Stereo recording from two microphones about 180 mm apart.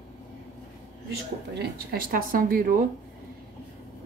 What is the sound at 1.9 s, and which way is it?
Speech, 55° right (ahead or behind).